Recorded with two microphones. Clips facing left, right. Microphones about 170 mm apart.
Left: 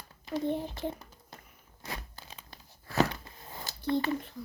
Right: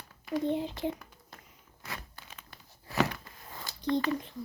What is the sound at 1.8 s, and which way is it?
Tearing, 30° left (ahead or behind).